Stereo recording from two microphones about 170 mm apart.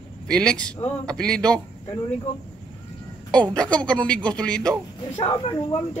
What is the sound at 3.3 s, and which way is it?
Speech, 5° left (ahead or behind).